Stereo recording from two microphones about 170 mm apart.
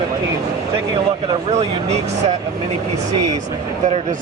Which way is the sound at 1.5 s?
40° right (ahead or behind).